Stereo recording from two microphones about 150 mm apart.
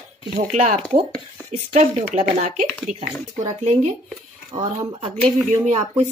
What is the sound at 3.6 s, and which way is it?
Speech, 50° right (ahead or behind).